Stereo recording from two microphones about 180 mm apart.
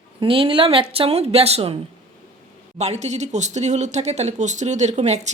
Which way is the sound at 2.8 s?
40° right (ahead or behind).